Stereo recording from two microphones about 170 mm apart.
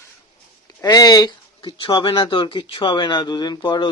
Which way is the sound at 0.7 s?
20° left (ahead or behind).